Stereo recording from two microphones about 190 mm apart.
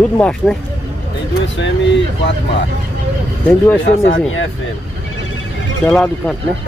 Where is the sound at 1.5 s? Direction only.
75° left (ahead or behind).